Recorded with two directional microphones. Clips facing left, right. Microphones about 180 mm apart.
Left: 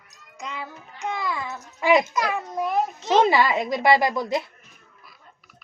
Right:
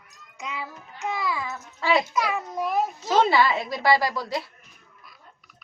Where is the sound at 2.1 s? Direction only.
Centre (ahead or behind).